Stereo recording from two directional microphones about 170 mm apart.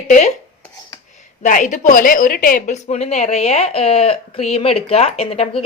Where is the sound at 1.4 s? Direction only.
50° left (ahead or behind).